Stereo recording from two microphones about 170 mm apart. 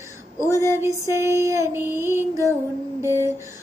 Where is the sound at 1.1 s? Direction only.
15° right (ahead or behind).